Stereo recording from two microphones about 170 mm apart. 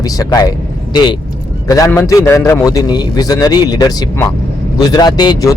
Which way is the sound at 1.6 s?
20° left (ahead or behind).